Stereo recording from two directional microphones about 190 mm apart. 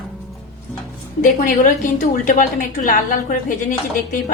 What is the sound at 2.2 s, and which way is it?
Speech, 45° left (ahead or behind).